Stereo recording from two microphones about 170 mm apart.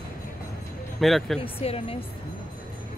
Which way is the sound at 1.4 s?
35° left (ahead or behind).